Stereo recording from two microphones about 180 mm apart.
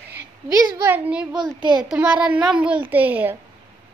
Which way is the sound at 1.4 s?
25° right (ahead or behind).